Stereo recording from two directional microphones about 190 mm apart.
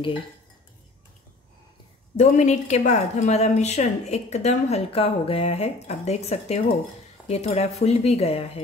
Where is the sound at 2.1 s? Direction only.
40° left (ahead or behind).